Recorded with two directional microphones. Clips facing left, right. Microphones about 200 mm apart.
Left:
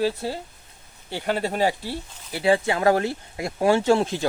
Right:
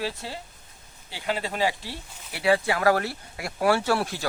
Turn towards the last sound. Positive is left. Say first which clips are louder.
# left 6 dB
turn(degrees=20)  # may be behind; listen again after turning